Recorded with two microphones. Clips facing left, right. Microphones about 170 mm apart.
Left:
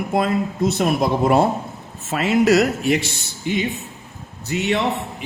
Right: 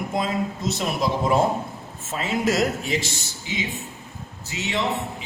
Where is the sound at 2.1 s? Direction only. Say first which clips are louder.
Left 8 dB; 70° left (ahead or behind).